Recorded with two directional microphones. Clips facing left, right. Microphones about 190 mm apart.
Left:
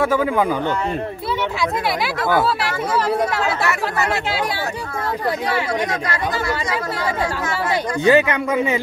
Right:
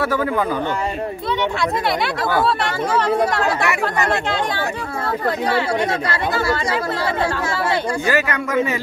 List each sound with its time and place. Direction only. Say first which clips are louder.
0.0 s speech: left 2 dB; 10° left (ahead or behind)
3.1 s speech: right 2 dB; 5° left (ahead or behind)
8.0 s speech: left 5 dB; 20° left (ahead or behind)